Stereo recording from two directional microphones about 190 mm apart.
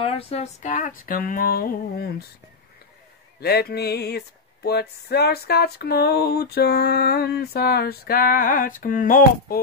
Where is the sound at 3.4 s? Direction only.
55° left (ahead or behind).